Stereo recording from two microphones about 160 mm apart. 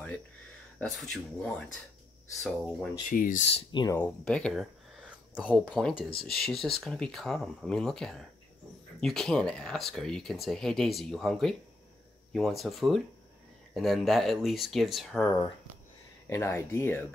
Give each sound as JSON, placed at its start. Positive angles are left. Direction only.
{"t": 0.7, "sound": "speech", "side_deg": 5}
{"t": 3.1, "sound": "speech", "side_deg": 60}
{"t": 3.4, "sound": "speech", "side_deg": 40}
{"t": 4.0, "sound": "speech", "side_deg": 5}
{"t": 16.3, "sound": "speech", "side_deg": 15}